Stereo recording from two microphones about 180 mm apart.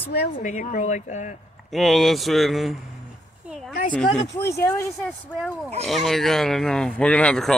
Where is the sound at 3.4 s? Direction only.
5° right (ahead or behind).